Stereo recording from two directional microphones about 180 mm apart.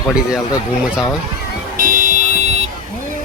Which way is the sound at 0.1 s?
5° right (ahead or behind).